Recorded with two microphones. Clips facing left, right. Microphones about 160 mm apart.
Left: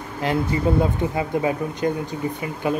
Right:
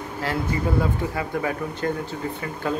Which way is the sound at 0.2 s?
20° left (ahead or behind).